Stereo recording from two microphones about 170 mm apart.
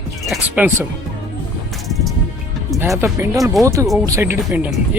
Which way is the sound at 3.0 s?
15° right (ahead or behind).